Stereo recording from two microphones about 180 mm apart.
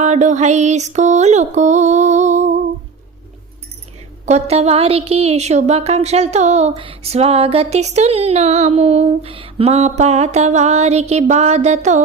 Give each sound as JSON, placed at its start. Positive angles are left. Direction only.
{"t": 0.0, "sound": "a woman's voice", "side_deg": -40}
{"t": 4.3, "sound": "a woman's voice", "side_deg": -35}